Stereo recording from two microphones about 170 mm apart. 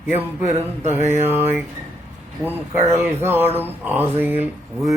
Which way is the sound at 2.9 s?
15° right (ahead or behind).